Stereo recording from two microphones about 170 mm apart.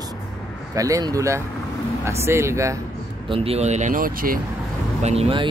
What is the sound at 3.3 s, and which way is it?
Speech, 35° right (ahead or behind).